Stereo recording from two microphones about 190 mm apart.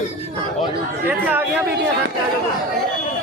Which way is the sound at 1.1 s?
10° right (ahead or behind).